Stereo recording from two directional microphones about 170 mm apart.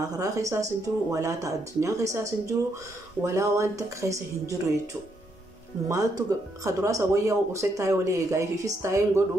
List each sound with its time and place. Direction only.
0.2 s speech: 20° right (ahead or behind)
5.9 s speech: 20° right (ahead or behind)